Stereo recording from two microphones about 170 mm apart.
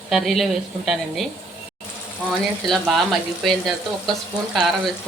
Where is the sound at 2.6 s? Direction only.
Centre (ahead or behind).